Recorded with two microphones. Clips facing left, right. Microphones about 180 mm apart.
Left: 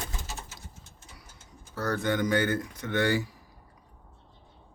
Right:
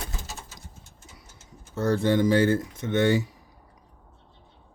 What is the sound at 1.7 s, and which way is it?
Speech, 30° right (ahead or behind).